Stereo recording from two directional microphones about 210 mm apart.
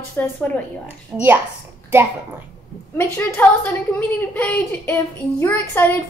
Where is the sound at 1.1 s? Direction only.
10° right (ahead or behind).